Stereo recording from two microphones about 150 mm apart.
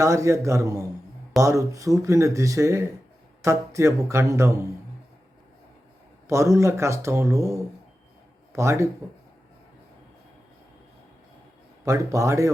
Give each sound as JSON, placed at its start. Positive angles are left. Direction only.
{"t": 0.0, "sound": "speech", "side_deg": -20}
{"t": 6.2, "sound": "speech", "side_deg": -20}
{"t": 11.9, "sound": "speech", "side_deg": -20}